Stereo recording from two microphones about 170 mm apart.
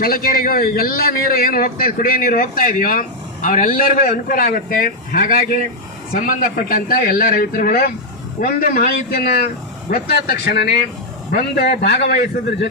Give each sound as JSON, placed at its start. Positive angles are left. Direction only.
{"t": 0.0, "sound": "a man's voice", "side_deg": 60}